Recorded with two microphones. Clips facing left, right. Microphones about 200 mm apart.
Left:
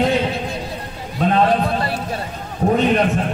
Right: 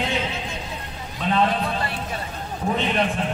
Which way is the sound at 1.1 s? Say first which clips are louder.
Left 6 dB; 45° left (ahead or behind).